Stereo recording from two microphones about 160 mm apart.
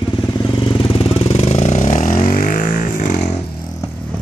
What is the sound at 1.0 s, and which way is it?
Vehicle, 40° left (ahead or behind).